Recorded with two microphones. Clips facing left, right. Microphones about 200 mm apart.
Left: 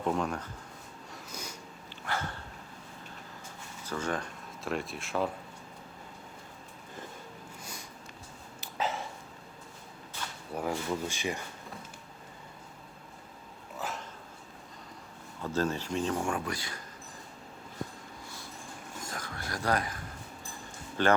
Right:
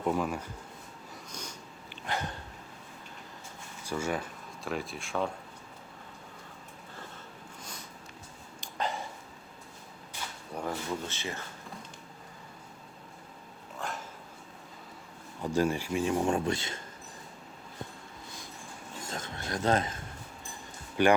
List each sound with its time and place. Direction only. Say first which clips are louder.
0.0 s speech: right 1 dB; 5° right (ahead or behind)
1.3 s a sound: left 1 dB; 10° left (ahead or behind)
1.9 s dog: right 1 dB; 20° right (ahead or behind)
3.8 s speech: right 1 dB; 10° right (ahead or behind)
8.6 s a sound: left 1 dB; 5° left (ahead or behind)
10.5 s speech: left 2 dB; 10° left (ahead or behind)
13.7 s dog: even; 5° left (ahead or behind)
15.4 s speech: right 3 dB; 15° right (ahead or behind)
19.1 s a sound: right 4 dB; 25° right (ahead or behind)
21.0 s speech: right 3 dB; 15° right (ahead or behind)